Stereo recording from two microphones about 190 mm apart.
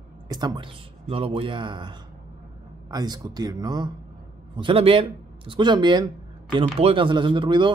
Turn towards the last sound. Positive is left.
turn(degrees=-25)  # may be behind; listen again after turning